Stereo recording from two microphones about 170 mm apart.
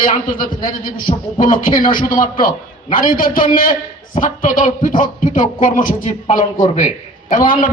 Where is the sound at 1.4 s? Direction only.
55° left (ahead or behind).